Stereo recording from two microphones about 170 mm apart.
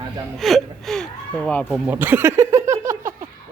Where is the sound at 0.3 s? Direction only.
Centre (ahead or behind).